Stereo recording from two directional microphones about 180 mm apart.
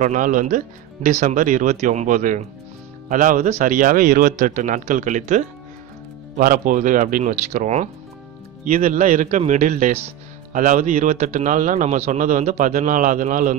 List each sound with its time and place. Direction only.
0.0 s speech: 45° right (ahead or behind)